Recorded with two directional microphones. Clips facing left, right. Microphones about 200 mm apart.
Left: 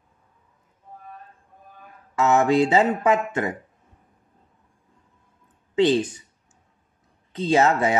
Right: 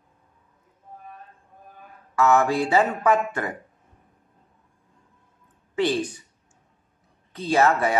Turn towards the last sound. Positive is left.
turn(degrees=20)  # may be behind; listen again after turning